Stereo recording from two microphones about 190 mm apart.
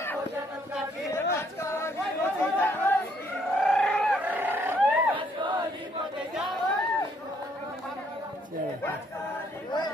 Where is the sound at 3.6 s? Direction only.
Centre (ahead or behind).